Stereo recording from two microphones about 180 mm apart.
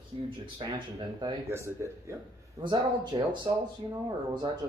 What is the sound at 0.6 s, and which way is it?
Speech, 25° right (ahead or behind).